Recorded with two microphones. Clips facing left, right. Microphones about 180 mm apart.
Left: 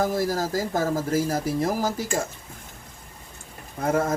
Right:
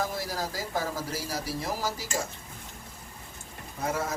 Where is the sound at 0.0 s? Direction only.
45° left (ahead or behind).